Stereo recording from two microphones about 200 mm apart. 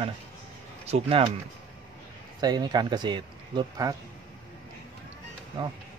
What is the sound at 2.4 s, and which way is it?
Speech, 20° right (ahead or behind).